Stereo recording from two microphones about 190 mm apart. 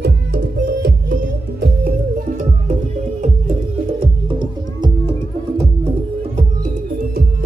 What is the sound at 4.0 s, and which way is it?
Music, 25° right (ahead or behind).